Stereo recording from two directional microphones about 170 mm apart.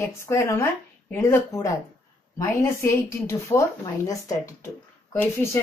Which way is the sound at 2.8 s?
15° left (ahead or behind).